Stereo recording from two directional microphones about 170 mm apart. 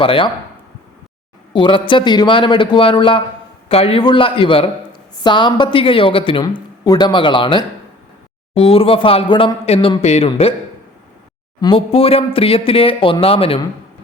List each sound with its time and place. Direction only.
0.0 s speech: 30° left (ahead or behind)
1.5 s speech: 30° left (ahead or behind)
11.6 s speech: 30° left (ahead or behind)